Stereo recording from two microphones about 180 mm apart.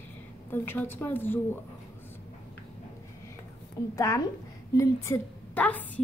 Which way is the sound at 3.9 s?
15° left (ahead or behind).